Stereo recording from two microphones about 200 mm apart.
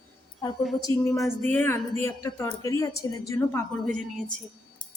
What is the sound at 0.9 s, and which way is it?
Speech, 25° right (ahead or behind).